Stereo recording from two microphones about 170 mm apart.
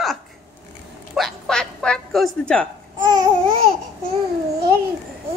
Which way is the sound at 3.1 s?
25° right (ahead or behind).